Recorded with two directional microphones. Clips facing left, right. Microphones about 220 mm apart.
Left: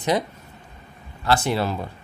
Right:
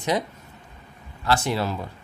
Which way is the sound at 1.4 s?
60° left (ahead or behind).